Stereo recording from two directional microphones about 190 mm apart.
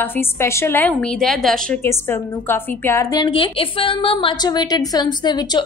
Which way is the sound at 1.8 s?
10° left (ahead or behind).